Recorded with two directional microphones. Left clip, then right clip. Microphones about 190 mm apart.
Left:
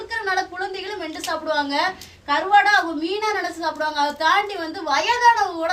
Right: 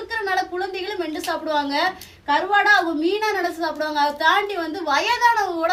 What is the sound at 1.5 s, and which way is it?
A woman's voice, 15° right (ahead or behind).